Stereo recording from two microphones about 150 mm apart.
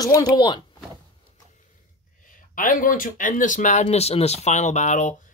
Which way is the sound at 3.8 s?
45° left (ahead or behind).